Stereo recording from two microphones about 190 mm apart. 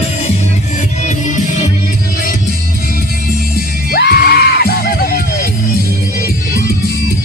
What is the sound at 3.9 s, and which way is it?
Music, 55° left (ahead or behind).